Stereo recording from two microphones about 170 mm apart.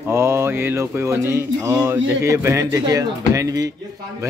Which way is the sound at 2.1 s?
15° right (ahead or behind).